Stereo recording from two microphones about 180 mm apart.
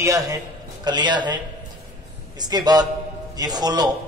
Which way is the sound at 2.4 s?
20° right (ahead or behind).